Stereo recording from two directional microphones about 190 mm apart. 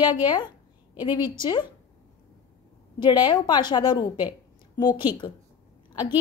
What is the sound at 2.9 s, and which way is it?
A woman's voice, 25° left (ahead or behind).